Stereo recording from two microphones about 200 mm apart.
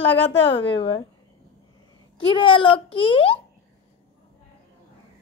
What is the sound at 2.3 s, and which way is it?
A child's voice, 25° left (ahead or behind).